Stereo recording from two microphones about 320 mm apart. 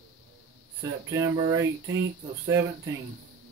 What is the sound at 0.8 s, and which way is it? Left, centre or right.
Speech, centre.